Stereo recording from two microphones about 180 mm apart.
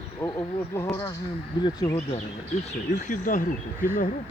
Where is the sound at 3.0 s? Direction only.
50° left (ahead or behind).